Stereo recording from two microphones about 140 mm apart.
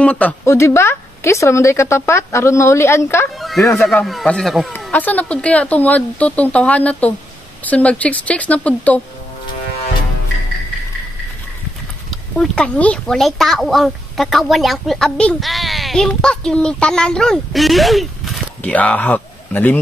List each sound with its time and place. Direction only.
0.0 s speech: 10° left (ahead or behind)
3.3 s a sound: centre (ahead or behind)
3.8 s speech: centre (ahead or behind)
12.1 s speech: 5° left (ahead or behind)